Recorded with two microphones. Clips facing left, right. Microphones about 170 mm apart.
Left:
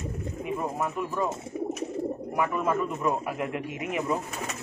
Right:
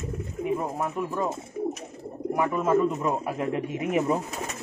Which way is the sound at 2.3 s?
25° right (ahead or behind).